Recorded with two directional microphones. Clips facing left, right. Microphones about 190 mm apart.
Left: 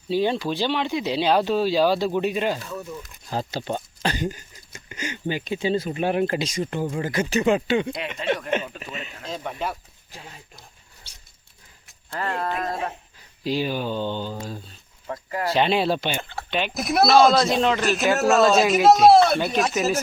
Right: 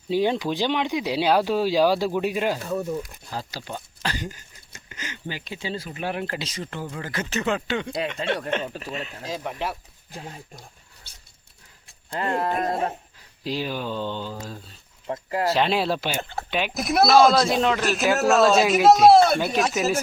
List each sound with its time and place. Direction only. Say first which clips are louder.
0.1 s speech: even; 15° right (ahead or behind)
2.6 s speech: right 7 dB; 40° right (ahead or behind)
3.2 s speech: left 6 dB; 25° left (ahead or behind)
6.8 s speech: left 7 dB; 25° left (ahead or behind)
7.1 s speech: left 5 dB; 15° left (ahead or behind)
8.8 s speech: right 3 dB; centre (ahead or behind)
10.2 s speech: right 5 dB; 40° right (ahead or behind)
11.9 s a sound: right 2 dB; 20° right (ahead or behind)
12.5 s speech: right 3 dB; 35° right (ahead or behind)
13.4 s speech: left 3 dB; centre (ahead or behind)
15.0 s speech: right 3 dB; 25° right (ahead or behind)
15.5 s speech: left 5 dB; centre (ahead or behind)